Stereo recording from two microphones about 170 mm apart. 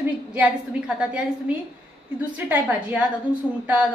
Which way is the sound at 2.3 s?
10° right (ahead or behind).